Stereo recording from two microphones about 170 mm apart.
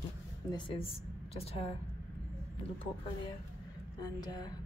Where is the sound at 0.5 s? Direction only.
30° left (ahead or behind).